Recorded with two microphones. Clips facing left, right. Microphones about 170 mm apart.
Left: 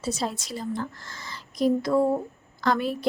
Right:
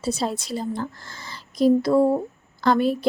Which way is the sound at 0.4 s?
30° right (ahead or behind).